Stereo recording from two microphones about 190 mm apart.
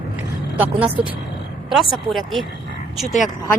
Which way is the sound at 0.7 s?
30° right (ahead or behind).